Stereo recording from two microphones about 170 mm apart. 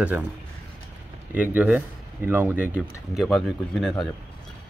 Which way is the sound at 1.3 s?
10° right (ahead or behind).